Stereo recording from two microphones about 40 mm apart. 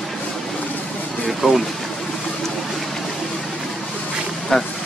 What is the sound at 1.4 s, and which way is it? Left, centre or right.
Speech, centre.